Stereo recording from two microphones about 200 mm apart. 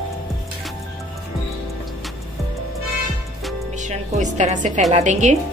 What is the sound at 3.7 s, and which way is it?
Music, 35° right (ahead or behind).